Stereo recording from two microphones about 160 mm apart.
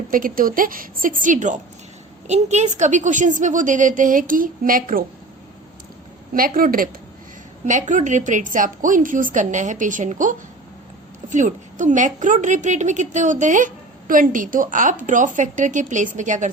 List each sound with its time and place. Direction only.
0.1 s a woman's voice: 60° right (ahead or behind)
6.3 s a woman's voice: 65° right (ahead or behind)
7.6 s a woman's voice: 50° right (ahead or behind)